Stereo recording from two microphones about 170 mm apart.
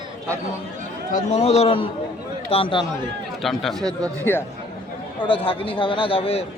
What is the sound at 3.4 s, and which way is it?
Speech, centre (ahead or behind).